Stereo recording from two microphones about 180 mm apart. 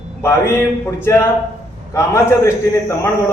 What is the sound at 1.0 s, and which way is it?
A man's voice, 15° left (ahead or behind).